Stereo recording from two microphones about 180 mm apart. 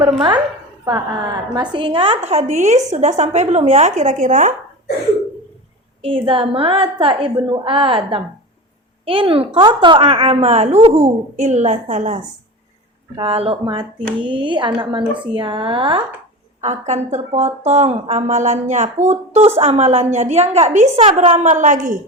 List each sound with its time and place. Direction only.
0.0 s a woman's voice: 25° right (ahead or behind); by 4.5 s 45° right (ahead or behind)
6.0 s a woman's voice: 30° right (ahead or behind)
16.6 s a woman's voice: 40° right (ahead or behind)